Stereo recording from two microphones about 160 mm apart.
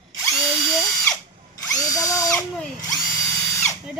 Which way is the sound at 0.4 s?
5° right (ahead or behind).